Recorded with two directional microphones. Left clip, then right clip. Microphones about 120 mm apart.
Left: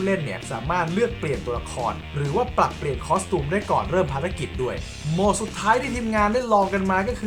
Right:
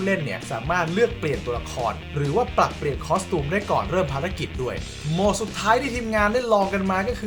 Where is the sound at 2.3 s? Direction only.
15° right (ahead or behind).